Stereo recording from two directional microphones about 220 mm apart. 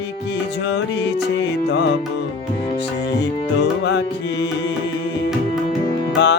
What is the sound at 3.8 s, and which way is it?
Music, 50° left (ahead or behind).